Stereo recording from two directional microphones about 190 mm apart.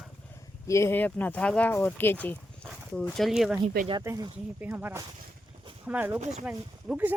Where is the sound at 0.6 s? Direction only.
15° left (ahead or behind); by 3.6 s centre (ahead or behind).